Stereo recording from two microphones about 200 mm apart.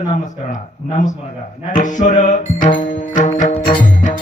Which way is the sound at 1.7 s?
40° left (ahead or behind).